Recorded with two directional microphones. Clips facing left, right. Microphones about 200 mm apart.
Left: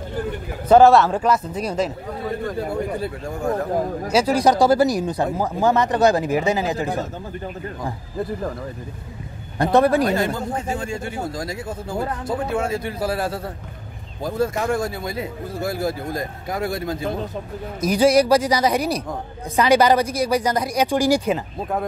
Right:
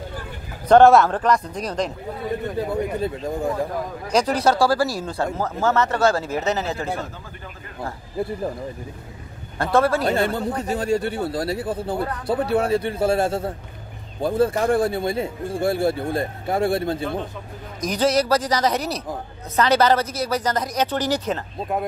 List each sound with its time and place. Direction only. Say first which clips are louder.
0.7 s speech: even; 5° left (ahead or behind)
4.1 s speech: left 2 dB; 10° left (ahead or behind)
9.6 s speech: left 3 dB; 20° left (ahead or behind)
10.0 s speech: even; 30° right (ahead or behind)
17.7 s speech: left 4 dB; 10° left (ahead or behind)